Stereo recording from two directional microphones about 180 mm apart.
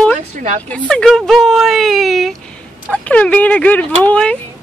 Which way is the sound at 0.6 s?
5° left (ahead or behind).